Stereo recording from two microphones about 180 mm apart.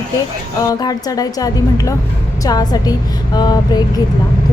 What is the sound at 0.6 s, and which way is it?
Speech, 20° left (ahead or behind).